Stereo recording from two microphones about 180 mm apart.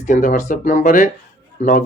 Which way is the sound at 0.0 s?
45° left (ahead or behind).